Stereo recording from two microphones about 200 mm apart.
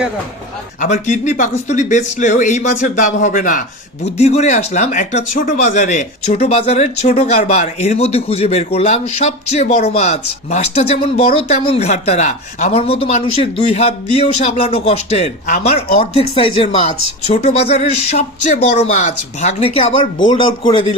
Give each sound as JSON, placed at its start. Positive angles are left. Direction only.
{"t": 0.8, "sound": "a woman's voice", "side_deg": 40}